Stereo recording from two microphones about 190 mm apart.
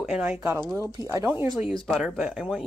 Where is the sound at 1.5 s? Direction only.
Centre (ahead or behind).